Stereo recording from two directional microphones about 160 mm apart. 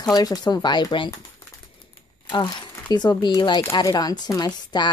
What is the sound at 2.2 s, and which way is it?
A woman's voice, 25° left (ahead or behind).